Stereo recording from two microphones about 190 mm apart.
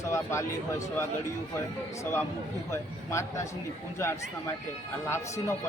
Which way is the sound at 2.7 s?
15° left (ahead or behind).